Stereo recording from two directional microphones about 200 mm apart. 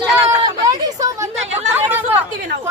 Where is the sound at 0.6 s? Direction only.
20° right (ahead or behind).